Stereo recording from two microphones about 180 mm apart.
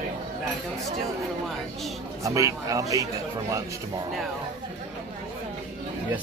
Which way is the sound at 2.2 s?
15° right (ahead or behind).